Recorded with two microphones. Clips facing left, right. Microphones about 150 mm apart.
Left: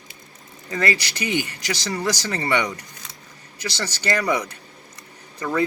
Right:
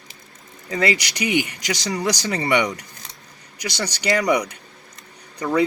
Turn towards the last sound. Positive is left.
turn(degrees=-20)  # may be behind; listen again after turning